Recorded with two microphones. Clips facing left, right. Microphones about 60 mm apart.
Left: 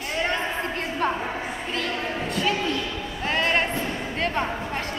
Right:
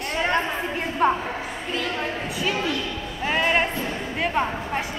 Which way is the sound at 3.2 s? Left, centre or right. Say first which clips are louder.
Right 2 dB; centre.